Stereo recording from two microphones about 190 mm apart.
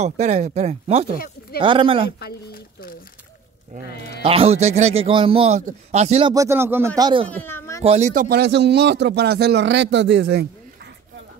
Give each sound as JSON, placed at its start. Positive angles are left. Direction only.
{"t": 0.0, "sound": "a man's voice", "side_deg": -35}
{"t": 1.1, "sound": "speech", "side_deg": 50}
{"t": 1.6, "sound": "speech", "side_deg": -25}
{"t": 2.0, "sound": "speech", "side_deg": 55}
{"t": 4.2, "sound": "a man's voice", "side_deg": -30}
{"t": 6.3, "sound": "speech", "side_deg": -15}
{"t": 7.0, "sound": "speech", "side_deg": -25}
{"t": 7.2, "sound": "speech", "side_deg": 10}
{"t": 7.8, "sound": "a man's voice", "side_deg": -35}
{"t": 8.1, "sound": "speech", "side_deg": -50}